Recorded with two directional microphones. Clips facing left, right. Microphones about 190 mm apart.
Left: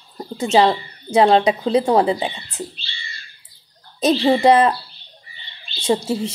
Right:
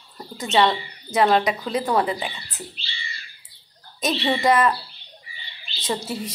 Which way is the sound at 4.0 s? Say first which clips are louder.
Left 7 dB; 30° left (ahead or behind).